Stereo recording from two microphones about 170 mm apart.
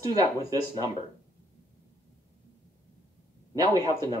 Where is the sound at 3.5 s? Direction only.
20° right (ahead or behind).